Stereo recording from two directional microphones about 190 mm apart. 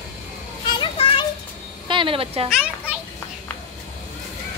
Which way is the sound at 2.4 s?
5° right (ahead or behind).